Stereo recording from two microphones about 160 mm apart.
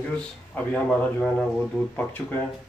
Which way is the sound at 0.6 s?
10° left (ahead or behind).